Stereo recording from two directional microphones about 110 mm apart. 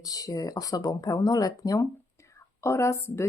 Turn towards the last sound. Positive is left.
turn(degrees=25)  # may be behind; listen again after turning